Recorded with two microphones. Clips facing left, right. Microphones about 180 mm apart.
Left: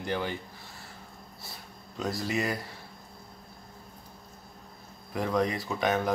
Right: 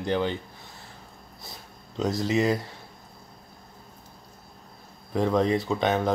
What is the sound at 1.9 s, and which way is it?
Speech, 20° right (ahead or behind).